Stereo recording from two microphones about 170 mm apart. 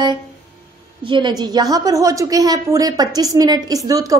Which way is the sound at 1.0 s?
25° right (ahead or behind).